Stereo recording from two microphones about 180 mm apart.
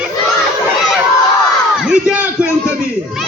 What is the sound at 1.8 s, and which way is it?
Speech, 5° right (ahead or behind).